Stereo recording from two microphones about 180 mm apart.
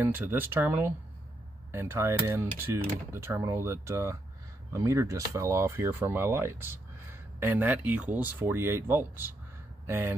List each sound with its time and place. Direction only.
0.0 s speech: 10° right (ahead or behind)